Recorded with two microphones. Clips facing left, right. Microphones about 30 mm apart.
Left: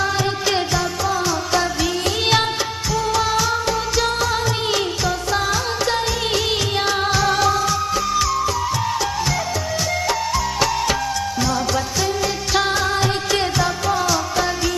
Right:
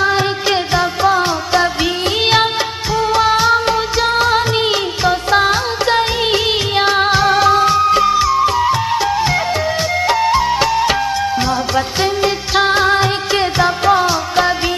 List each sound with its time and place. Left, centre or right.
0.0 s music: right
2.9 s music of bollywood: right
5.0 s music: right
7.5 s music of bollywood: right
8.1 s music: right
10.0 s music: right
11.7 s music: right